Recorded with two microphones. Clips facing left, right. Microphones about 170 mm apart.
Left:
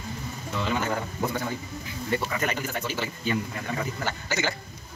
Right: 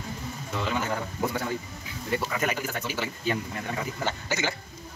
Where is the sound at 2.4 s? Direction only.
10° right (ahead or behind).